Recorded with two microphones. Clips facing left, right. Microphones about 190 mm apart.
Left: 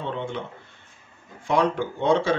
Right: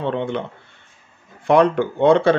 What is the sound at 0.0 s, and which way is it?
Speech, 65° right (ahead or behind).